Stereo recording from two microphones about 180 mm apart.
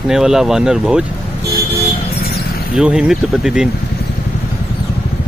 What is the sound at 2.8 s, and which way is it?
Speech, 5° right (ahead or behind).